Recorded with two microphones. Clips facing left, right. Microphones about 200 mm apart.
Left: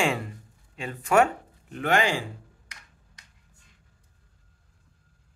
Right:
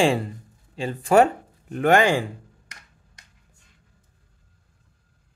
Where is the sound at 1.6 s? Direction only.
45° right (ahead or behind).